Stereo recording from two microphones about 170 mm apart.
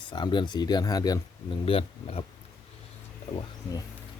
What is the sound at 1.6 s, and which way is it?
Speech, 35° left (ahead or behind).